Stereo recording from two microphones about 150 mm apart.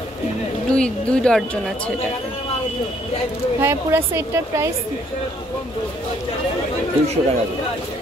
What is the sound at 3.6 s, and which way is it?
A woman's voice, 15° right (ahead or behind).